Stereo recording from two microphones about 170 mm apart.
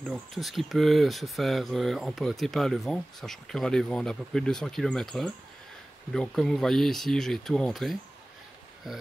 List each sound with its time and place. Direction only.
0.1 s speech: centre (ahead or behind)